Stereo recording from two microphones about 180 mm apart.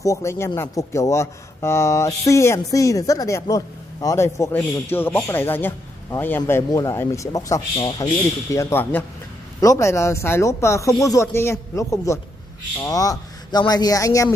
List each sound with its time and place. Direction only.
0.0 s speech: 15° left (ahead or behind)